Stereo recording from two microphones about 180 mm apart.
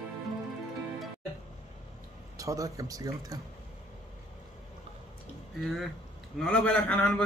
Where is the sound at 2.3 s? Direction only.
20° right (ahead or behind).